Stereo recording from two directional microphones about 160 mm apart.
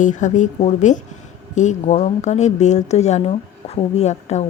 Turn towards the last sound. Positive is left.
turn(degrees=45)  # may be behind; listen again after turning